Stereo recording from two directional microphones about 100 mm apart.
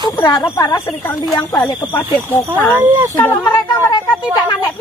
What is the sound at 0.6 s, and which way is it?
Speech, 35° left (ahead or behind).